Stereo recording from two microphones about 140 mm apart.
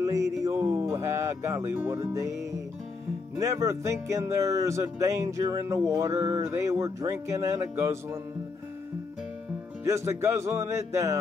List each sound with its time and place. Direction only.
0.0 s music: 20° right (ahead or behind)
3.3 s speech: 20° right (ahead or behind)
9.8 s speech: 20° right (ahead or behind)